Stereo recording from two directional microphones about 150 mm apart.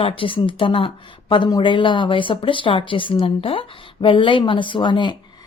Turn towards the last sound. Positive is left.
turn(degrees=30)  # may be behind; listen again after turning